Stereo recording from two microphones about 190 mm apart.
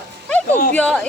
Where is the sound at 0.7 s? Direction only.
5° left (ahead or behind).